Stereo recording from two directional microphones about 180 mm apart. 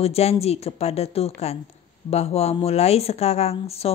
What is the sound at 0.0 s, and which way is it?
Speech, 35° left (ahead or behind).